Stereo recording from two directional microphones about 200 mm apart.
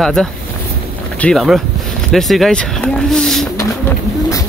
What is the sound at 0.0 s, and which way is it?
Speech, centre (ahead or behind).